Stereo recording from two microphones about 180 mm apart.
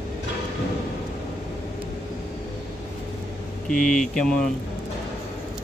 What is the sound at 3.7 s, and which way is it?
Speech, 45° left (ahead or behind).